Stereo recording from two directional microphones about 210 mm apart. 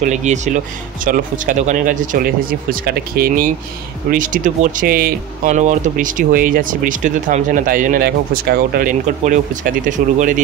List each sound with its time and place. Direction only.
0.0 s speech: 35° right (ahead or behind)